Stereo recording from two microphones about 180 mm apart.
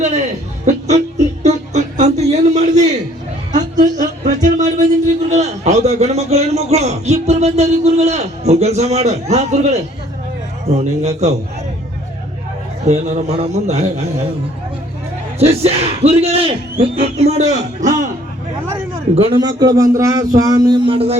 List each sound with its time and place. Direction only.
0.6 s chuckle: 40° right (ahead or behind)
1.5 s a sound: 40° right (ahead or behind)
11.0 s speech: 40° right (ahead or behind)
12.8 s speech: 40° right (ahead or behind)
15.4 s a man's voice: 35° right (ahead or behind)
19.1 s speech: 30° right (ahead or behind)